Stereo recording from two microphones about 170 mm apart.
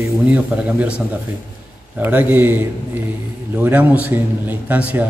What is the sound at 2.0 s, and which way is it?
A man's voice, 10° right (ahead or behind).